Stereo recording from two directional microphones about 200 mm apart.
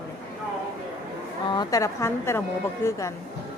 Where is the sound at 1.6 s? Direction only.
15° left (ahead or behind).